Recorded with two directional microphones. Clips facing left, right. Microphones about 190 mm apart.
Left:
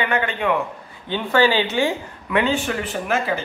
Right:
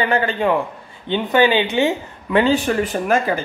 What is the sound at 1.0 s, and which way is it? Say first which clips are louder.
Speech: right 2 dB; 20° right (ahead or behind).